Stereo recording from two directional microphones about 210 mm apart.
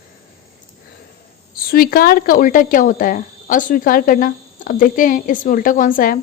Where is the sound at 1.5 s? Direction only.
45° left (ahead or behind).